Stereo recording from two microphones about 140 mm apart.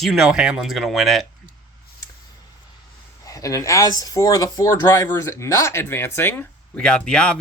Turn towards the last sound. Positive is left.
turn(degrees=5)  # may be behind; listen again after turning